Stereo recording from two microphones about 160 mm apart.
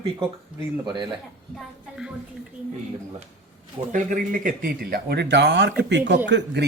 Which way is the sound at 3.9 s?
60° right (ahead or behind).